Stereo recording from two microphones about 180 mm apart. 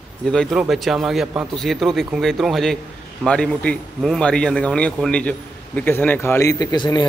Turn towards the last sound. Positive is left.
turn(degrees=25)  # may be behind; listen again after turning